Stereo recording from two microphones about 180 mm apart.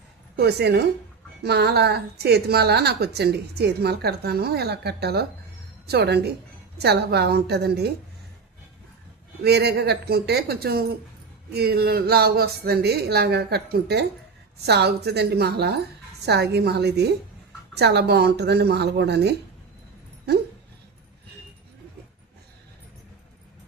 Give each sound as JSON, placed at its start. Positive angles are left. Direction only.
{"t": 0.3, "sound": "a woman's voice", "side_deg": -65}
{"t": 9.4, "sound": "a woman's voice", "side_deg": -65}